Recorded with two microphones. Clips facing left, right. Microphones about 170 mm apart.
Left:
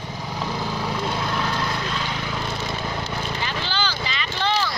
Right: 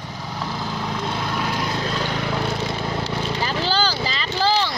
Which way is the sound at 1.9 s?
40° right (ahead or behind).